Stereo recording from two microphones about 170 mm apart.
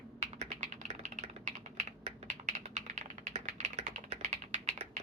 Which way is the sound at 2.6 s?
40° right (ahead or behind).